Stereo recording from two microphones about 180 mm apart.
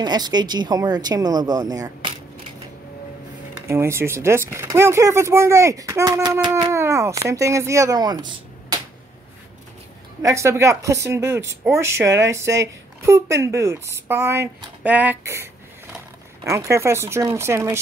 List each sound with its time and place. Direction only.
0.0 s speech: 25° right (ahead or behind)
3.6 s speech: 15° right (ahead or behind)
10.2 s speech: 15° right (ahead or behind)
16.4 s speech: 15° right (ahead or behind)